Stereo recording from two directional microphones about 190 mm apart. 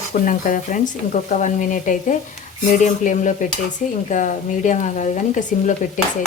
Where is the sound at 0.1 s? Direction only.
45° left (ahead or behind).